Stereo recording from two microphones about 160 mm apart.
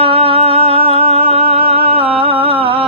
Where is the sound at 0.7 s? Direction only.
35° right (ahead or behind).